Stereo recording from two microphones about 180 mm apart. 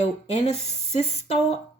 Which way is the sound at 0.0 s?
35° left (ahead or behind).